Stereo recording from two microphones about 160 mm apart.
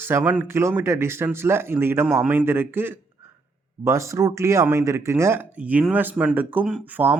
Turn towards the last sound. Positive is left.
turn(degrees=-10)  # may be behind; listen again after turning